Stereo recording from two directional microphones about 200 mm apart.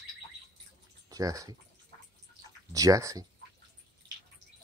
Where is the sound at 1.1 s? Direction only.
15° right (ahead or behind).